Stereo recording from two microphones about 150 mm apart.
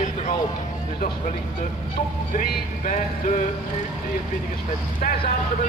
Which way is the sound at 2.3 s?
60° left (ahead or behind).